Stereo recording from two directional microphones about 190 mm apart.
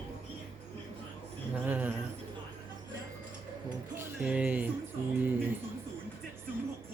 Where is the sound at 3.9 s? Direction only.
10° right (ahead or behind).